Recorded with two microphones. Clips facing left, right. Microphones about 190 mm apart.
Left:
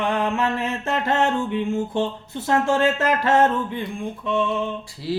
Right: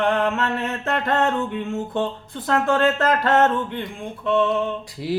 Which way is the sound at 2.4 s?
10° left (ahead or behind).